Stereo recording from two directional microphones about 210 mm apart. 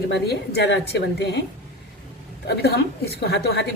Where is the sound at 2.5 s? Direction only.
50° left (ahead or behind).